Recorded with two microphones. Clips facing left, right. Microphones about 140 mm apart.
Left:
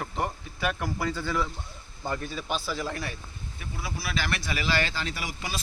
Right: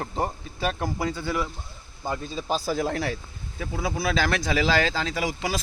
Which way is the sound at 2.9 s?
90° right.